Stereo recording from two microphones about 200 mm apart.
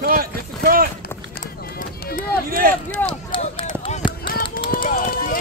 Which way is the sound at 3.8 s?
25° left (ahead or behind).